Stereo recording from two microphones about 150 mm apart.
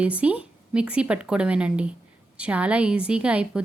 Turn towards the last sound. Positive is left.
turn(degrees=-10)  # may be behind; listen again after turning